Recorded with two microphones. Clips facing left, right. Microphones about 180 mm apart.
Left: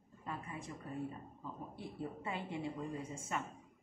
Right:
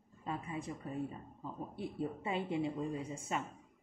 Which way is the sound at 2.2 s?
20° right (ahead or behind).